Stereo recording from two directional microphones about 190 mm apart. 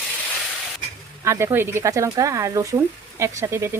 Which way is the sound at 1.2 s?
15° right (ahead or behind).